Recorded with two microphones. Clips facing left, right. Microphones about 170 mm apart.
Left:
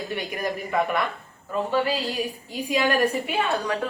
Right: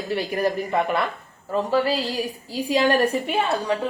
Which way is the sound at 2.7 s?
30° right (ahead or behind).